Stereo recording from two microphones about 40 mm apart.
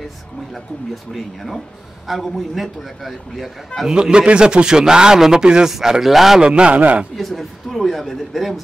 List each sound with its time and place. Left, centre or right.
1.1 s speech: centre
3.8 s a man's voice: right
5.7 s speech: centre
6.4 s a man's voice: right
7.2 s speech: centre